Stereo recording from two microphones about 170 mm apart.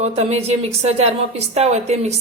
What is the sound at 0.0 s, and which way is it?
A woman's voice, 40° right (ahead or behind).